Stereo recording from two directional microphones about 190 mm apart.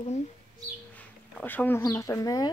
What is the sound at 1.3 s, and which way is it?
Speech, 10° left (ahead or behind).